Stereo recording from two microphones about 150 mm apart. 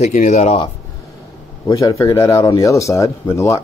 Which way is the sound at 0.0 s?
55° left (ahead or behind).